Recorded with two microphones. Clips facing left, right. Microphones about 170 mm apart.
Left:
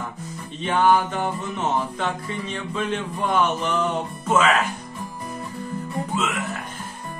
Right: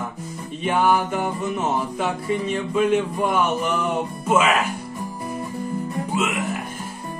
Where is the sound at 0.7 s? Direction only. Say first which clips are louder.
Even; 10° right (ahead or behind).